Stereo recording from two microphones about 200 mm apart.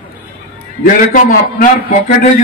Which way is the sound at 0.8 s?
40° left (ahead or behind).